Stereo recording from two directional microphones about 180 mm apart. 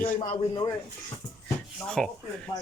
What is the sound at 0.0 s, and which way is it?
Speech, 45° left (ahead or behind).